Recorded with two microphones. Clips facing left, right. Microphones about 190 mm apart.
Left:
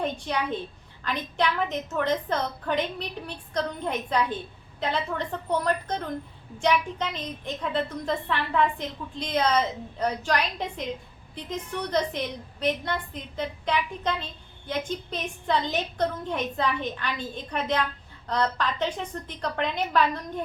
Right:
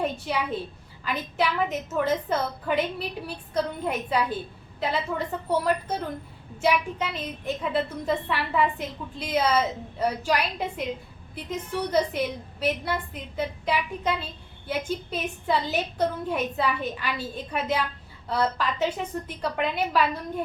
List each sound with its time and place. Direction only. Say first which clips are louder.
0.0 s a woman's voice: right 1 dB; 5° right (ahead or behind)